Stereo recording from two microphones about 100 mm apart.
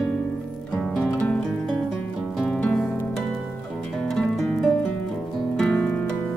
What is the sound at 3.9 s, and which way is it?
Music, 5° left (ahead or behind).